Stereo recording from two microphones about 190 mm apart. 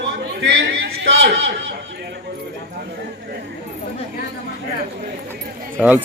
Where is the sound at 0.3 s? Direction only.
75° right (ahead or behind).